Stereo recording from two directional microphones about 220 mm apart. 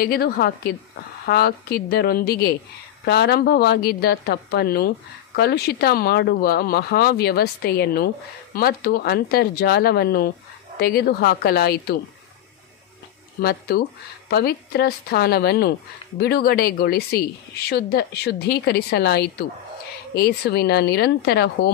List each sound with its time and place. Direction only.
0.0 s a woman's voice: 45° left (ahead or behind)
13.4 s a woman's voice: 45° left (ahead or behind)